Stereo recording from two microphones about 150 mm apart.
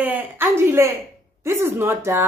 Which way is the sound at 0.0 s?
15° right (ahead or behind).